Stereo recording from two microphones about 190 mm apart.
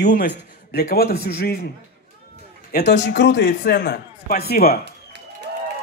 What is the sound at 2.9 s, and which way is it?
A man's voice, 65° left (ahead or behind).